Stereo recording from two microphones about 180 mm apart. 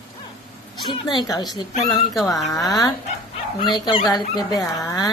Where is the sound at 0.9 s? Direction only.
25° left (ahead or behind).